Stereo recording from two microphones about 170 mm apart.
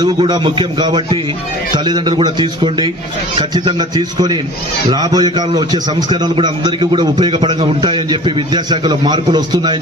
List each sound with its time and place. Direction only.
0.0 s a man's voice: 25° right (ahead or behind)